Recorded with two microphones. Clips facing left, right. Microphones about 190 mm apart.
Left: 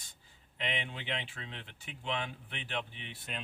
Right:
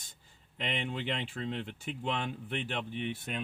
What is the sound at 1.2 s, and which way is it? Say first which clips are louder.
Speech: right 10 dB; 50° right (ahead or behind).